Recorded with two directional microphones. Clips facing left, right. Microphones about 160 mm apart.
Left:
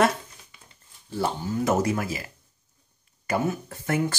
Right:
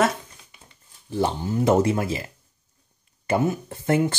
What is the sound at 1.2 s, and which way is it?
Speech, 25° right (ahead or behind).